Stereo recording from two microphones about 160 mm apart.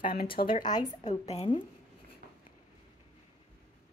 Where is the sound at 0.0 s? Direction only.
65° left (ahead or behind).